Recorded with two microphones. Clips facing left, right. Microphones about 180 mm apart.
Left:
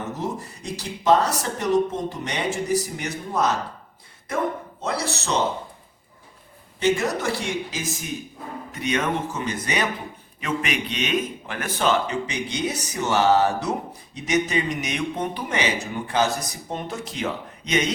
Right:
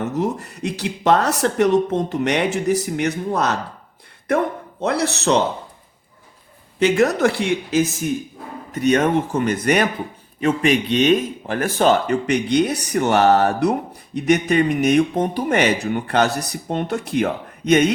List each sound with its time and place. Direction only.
0.2 s speech: 70° right (ahead or behind)
4.8 s speech: 60° right (ahead or behind)
6.7 s speech: 65° right (ahead or behind)
10.4 s speech: 35° right (ahead or behind); by 17.9 s 55° right (ahead or behind)